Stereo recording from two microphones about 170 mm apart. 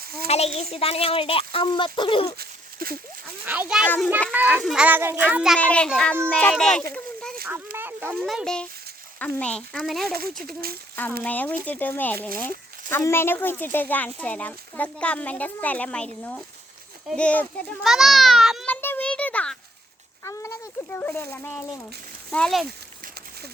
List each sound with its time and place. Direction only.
0.0 s a sound: 65° right (ahead or behind)
0.3 s speech: 40° left (ahead or behind)
2.4 s a sound: 60° right (ahead or behind)
3.4 s a child's voice: 10° right (ahead or behind)
5.5 s a child's voice: 5° left (ahead or behind)
6.9 s a sound: 5° left (ahead or behind)
7.4 s speech: 10° right (ahead or behind)
8.2 s a child's voice: centre (ahead or behind)
10.1 s speech: 60° right (ahead or behind)
11.2 s a child's voice: 10° left (ahead or behind)
18.7 s a sound: 10° left (ahead or behind)
20.2 s a child's voice: 15° left (ahead or behind)